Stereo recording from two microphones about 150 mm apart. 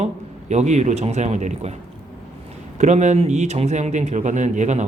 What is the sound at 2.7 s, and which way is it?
Speech, 50° right (ahead or behind).